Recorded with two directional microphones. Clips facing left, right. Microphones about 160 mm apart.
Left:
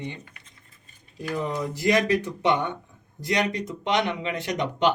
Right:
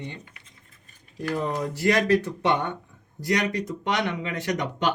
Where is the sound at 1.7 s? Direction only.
15° left (ahead or behind).